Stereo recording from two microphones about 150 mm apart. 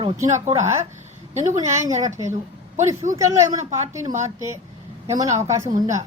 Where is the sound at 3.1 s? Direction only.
20° right (ahead or behind).